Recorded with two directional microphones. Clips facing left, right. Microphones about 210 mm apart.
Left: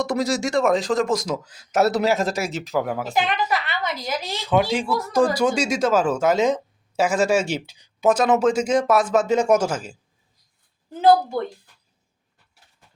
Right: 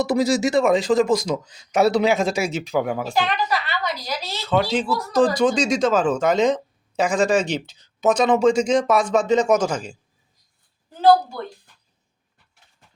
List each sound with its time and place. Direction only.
0.0 s speech: 5° right (ahead or behind)
3.2 s a sound: 20° left (ahead or behind)
4.7 s speech: 10° left (ahead or behind)
11.0 s a woman's voice: 20° left (ahead or behind)